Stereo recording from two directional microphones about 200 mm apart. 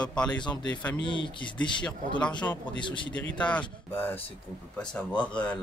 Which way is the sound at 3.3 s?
5° left (ahead or behind).